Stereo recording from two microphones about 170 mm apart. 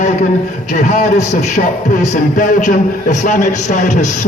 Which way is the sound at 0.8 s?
45° left (ahead or behind).